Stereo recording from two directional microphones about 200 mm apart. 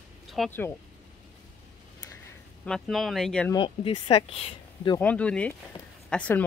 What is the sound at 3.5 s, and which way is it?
Speech, 25° left (ahead or behind).